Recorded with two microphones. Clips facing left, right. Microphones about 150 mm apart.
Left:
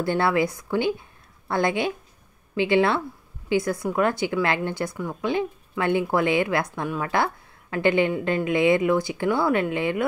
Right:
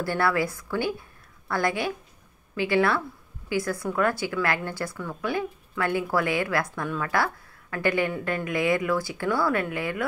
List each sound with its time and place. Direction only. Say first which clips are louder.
0.0 s a woman's voice: left 3 dB; 20° left (ahead or behind)